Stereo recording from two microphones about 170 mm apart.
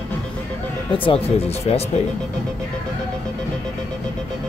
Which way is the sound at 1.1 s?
35° left (ahead or behind).